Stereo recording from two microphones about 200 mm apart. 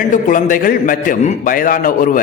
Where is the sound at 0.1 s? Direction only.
40° left (ahead or behind).